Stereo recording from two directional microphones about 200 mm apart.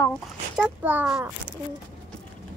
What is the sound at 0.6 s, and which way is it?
Speech, 5° right (ahead or behind).